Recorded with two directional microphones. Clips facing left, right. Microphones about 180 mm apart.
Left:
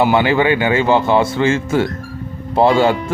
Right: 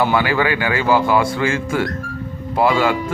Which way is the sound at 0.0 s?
20° left (ahead or behind).